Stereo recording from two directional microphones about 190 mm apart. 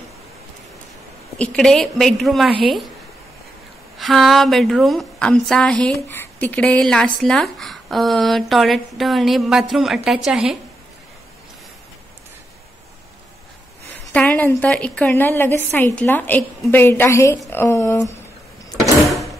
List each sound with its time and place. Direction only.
1.4 s a woman's voice: 5° left (ahead or behind)
4.0 s a woman's voice: centre (ahead or behind)
13.8 s speech: 10° left (ahead or behind)
19.0 s a sound: centre (ahead or behind)